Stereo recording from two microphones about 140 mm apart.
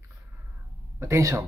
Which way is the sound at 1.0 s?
20° right (ahead or behind).